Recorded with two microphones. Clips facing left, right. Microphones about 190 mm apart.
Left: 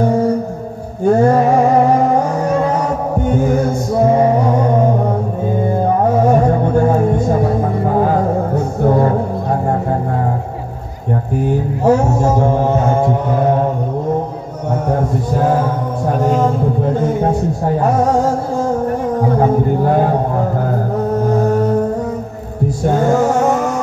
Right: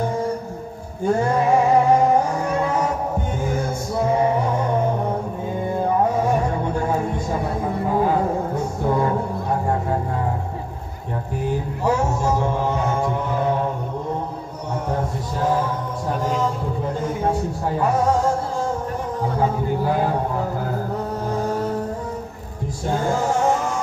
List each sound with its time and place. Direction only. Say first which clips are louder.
1.0 s music: left 8 dB; 45° left (ahead or behind)
5.9 s music: left 6 dB; 45° left (ahead or behind)
11.8 s music: left 8 dB; 45° left (ahead or behind)
16.1 s music: left 8 dB; 45° left (ahead or behind)
19.3 s a sound: left 6 dB; 50° left (ahead or behind)
22.8 s music: left 8 dB; 45° left (ahead or behind)